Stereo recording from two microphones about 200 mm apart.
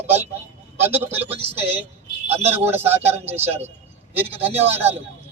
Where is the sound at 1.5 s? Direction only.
30° right (ahead or behind).